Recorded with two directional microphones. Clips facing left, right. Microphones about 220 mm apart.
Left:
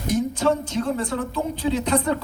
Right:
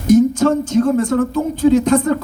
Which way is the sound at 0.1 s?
45° right (ahead or behind).